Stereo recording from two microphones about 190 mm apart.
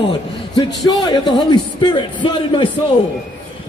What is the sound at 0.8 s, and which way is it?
Speech, 20° left (ahead or behind).